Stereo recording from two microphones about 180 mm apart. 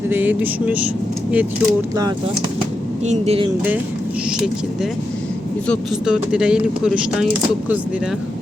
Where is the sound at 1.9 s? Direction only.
20° right (ahead or behind).